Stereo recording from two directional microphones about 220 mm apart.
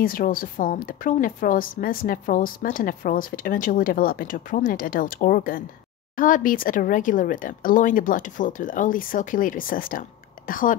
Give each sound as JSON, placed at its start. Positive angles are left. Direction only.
{"t": 0.0, "sound": "a woman's voice", "side_deg": 40}